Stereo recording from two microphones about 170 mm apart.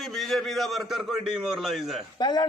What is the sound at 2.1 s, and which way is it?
Speech, 25° left (ahead or behind).